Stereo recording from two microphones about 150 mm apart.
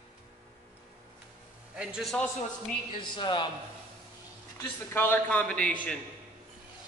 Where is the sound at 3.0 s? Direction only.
30° left (ahead or behind).